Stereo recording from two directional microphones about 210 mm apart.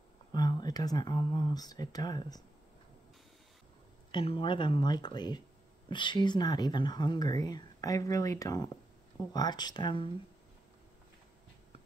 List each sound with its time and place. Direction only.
0.3 s speech: 20° left (ahead or behind)
4.1 s speech: 25° left (ahead or behind)